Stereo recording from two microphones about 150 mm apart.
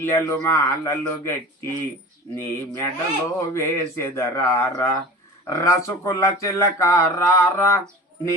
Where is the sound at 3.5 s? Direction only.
15° left (ahead or behind).